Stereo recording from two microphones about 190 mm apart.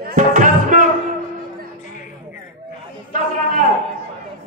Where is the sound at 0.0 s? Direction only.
40° right (ahead or behind).